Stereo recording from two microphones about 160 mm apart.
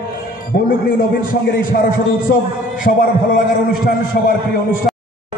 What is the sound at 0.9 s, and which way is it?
A man's voice, 60° left (ahead or behind).